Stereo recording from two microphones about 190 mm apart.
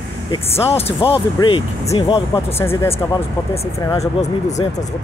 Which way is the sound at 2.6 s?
15° left (ahead or behind).